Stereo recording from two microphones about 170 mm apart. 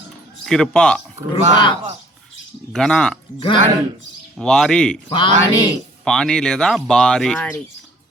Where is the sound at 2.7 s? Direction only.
5° left (ahead or behind).